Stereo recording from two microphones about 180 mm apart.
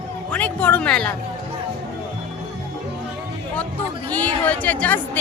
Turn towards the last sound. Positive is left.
turn(degrees=10)  # may be behind; listen again after turning